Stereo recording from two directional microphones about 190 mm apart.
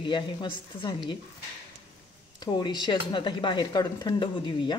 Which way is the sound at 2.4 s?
20° left (ahead or behind).